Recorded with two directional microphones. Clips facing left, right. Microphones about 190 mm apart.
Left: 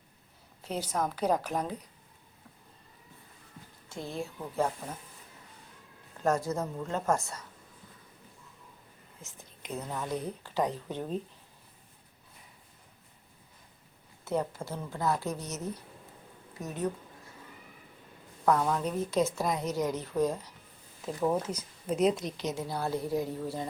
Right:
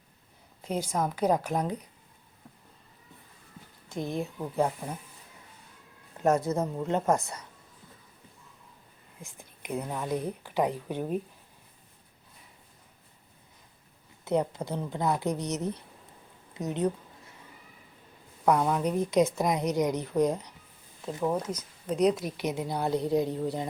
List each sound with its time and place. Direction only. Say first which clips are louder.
0.6 s speech: right 2 dB; 10° right (ahead or behind)
3.8 s speech: right 5 dB; 15° right (ahead or behind)
6.2 s a sound: right 3 dB; 20° right (ahead or behind)
6.5 s a woman's voice: right 4 dB; 20° right (ahead or behind)
9.2 s speech: right 4 dB; 10° right (ahead or behind)
14.3 s a woman's voice: right 4 dB; 15° right (ahead or behind)
18.4 s speech: right 2 dB; 15° right (ahead or behind)
21.2 s speech: even; 5° left (ahead or behind); by 23.6 s 20° right (ahead or behind)